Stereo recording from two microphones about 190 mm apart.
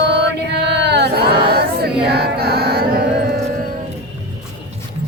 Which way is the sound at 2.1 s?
55° right (ahead or behind).